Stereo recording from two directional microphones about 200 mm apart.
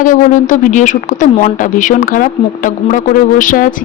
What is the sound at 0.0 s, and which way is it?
Speech, 40° left (ahead or behind).